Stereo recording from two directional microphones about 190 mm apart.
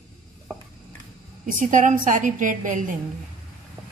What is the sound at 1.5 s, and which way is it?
A woman's voice, 45° right (ahead or behind).